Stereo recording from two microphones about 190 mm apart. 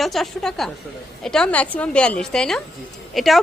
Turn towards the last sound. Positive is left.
turn(degrees=0)  # may be behind; listen again after turning